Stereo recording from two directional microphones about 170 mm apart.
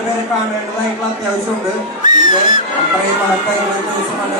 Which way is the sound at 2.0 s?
50° left (ahead or behind).